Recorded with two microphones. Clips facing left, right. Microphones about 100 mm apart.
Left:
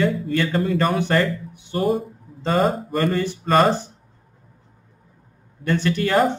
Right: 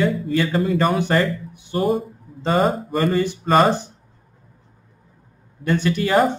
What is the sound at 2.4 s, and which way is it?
A man's voice, 10° right (ahead or behind).